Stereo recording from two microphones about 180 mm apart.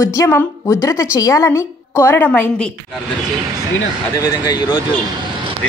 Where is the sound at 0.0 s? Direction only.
20° left (ahead or behind).